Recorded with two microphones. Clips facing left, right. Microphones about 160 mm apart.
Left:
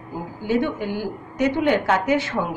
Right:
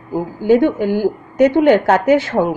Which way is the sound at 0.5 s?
40° right (ahead or behind).